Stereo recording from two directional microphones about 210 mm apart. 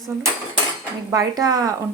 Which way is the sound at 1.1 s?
20° right (ahead or behind).